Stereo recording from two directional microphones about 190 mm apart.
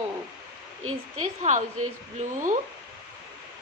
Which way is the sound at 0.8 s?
90° right.